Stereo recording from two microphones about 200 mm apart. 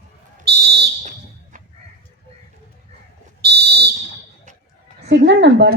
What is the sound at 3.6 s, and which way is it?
Fire alarm, 50° right (ahead or behind).